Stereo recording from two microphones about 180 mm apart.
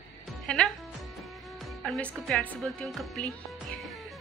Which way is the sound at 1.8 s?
Centre (ahead or behind).